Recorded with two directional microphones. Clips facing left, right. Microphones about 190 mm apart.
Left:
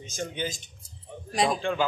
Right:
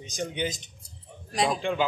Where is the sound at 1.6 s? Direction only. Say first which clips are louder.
Even; 15° right (ahead or behind).